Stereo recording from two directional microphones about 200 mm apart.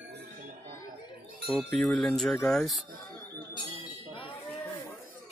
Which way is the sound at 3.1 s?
20° left (ahead or behind).